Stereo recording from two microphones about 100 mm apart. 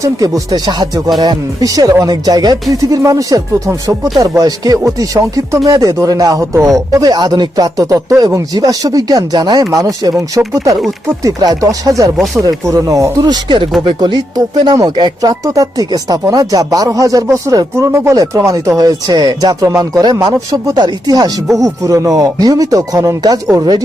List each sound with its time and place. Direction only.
0.0 s speech: 35° right (ahead or behind)
12.1 s speech: centre (ahead or behind)
12.4 s speech: 35° right (ahead or behind)